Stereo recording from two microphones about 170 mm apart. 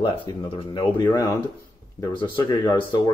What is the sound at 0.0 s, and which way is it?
Speech, 25° left (ahead or behind).